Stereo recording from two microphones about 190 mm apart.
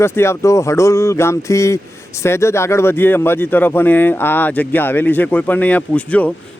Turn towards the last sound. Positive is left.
turn(degrees=5)  # may be behind; listen again after turning